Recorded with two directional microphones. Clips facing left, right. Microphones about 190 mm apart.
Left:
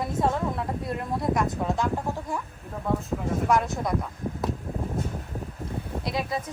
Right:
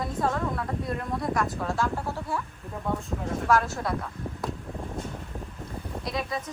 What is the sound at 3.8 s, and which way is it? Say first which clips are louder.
Speech: left 3 dB; 15° left (ahead or behind).